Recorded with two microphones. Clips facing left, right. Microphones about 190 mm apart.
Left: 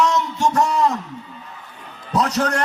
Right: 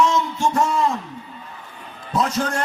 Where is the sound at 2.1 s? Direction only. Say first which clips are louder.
Left 2 dB; 70° left (ahead or behind).